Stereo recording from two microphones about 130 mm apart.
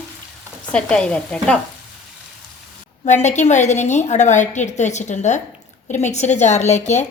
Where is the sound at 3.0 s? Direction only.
65° left (ahead or behind).